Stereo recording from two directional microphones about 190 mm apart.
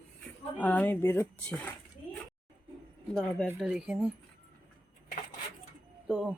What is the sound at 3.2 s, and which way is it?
Speech, 5° left (ahead or behind).